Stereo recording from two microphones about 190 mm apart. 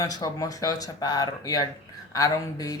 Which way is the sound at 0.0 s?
20° left (ahead or behind).